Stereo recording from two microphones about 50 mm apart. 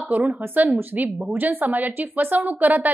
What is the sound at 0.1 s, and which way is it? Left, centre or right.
Speech, right.